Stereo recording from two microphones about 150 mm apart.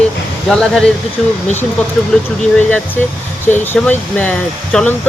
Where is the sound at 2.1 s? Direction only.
5° left (ahead or behind).